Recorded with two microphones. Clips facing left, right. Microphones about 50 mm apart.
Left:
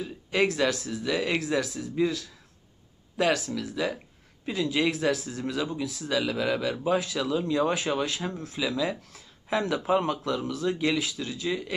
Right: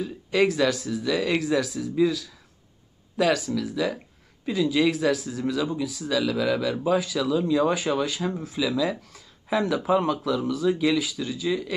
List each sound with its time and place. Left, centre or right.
0.4 s speech: centre
6.0 s speech: centre